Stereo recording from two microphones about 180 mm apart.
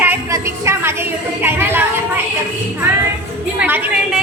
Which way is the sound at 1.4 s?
10° right (ahead or behind).